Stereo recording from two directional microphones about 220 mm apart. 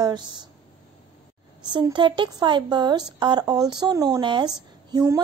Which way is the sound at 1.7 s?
20° right (ahead or behind).